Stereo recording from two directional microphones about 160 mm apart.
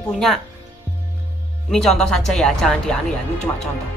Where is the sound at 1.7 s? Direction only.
5° left (ahead or behind).